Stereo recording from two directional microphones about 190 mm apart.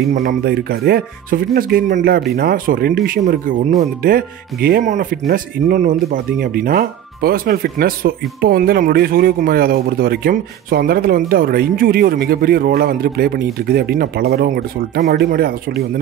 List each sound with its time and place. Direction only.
0.1 s speech: 45° right (ahead or behind)